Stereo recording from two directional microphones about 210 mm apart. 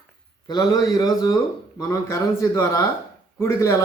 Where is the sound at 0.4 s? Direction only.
20° left (ahead or behind).